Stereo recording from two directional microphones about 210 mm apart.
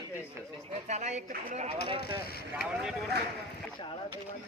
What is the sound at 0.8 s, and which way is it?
Speech, 35° right (ahead or behind).